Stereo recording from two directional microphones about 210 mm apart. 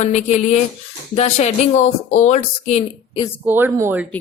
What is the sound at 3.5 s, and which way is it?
Speech, 10° right (ahead or behind).